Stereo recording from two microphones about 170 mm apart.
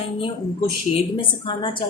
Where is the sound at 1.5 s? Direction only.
25° left (ahead or behind).